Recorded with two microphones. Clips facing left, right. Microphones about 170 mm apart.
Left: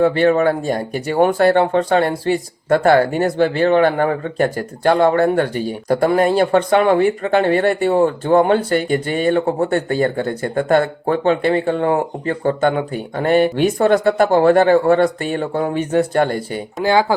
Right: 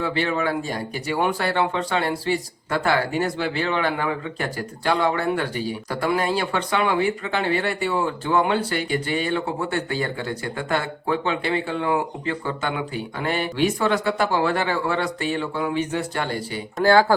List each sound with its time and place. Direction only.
0.0 s speech: 50° left (ahead or behind)
16.8 s speech: 15° left (ahead or behind)